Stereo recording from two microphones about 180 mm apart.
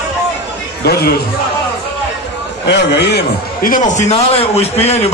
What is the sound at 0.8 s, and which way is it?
Speech, 60° left (ahead or behind).